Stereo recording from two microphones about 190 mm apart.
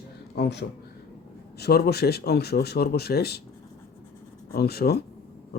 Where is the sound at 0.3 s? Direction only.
60° left (ahead or behind).